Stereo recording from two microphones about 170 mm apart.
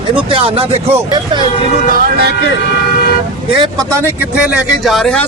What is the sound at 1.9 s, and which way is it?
Speech, 70° right (ahead or behind).